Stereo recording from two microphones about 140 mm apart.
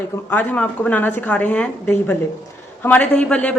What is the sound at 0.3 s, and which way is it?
A man's voice, 10° left (ahead or behind).